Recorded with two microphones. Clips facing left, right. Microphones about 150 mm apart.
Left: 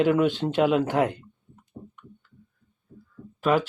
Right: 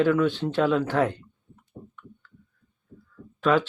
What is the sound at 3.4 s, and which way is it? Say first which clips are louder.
Speech: right 1 dB; 5° left (ahead or behind).